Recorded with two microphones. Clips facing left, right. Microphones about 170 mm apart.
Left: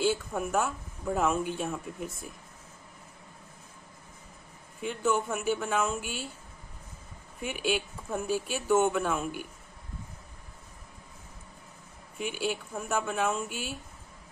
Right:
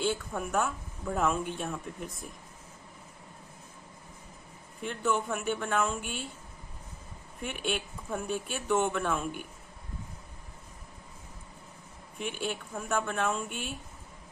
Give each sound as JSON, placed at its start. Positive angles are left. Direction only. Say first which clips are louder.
{"t": 0.0, "sound": "speech", "louder": "left 3 dB", "side_deg": 5}
{"t": 4.8, "sound": "speech", "louder": "left 2 dB", "side_deg": 0}
{"t": 7.3, "sound": "speech", "louder": "left 3 dB", "side_deg": 5}
{"t": 12.2, "sound": "speech", "louder": "left 3 dB", "side_deg": 0}